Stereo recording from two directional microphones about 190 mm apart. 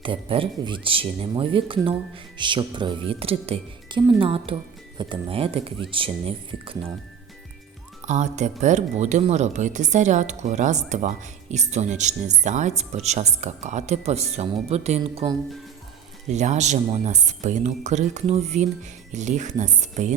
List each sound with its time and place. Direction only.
0.0 s speech: 25° right (ahead or behind)
8.0 s a woman's voice: 40° right (ahead or behind)
16.3 s a woman's voice: 35° right (ahead or behind)